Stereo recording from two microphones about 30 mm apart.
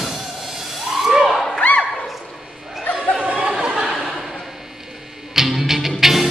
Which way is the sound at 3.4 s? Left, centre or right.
Right.